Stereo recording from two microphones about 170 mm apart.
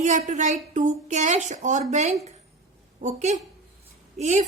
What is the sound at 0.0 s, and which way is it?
A woman's voice, 45° right (ahead or behind).